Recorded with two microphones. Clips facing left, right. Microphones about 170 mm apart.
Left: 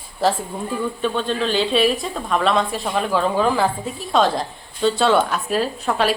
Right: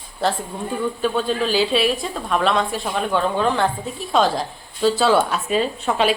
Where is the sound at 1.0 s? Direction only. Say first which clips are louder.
Right 1 dB; 5° right (ahead or behind).